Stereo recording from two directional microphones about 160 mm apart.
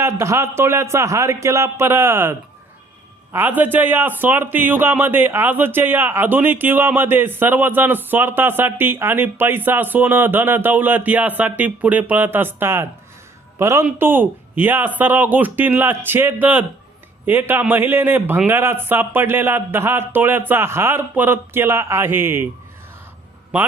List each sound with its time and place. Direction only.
0.0 s a man's voice: 15° right (ahead or behind)
3.3 s a man's voice: 10° right (ahead or behind)
23.5 s a man's voice: 10° right (ahead or behind)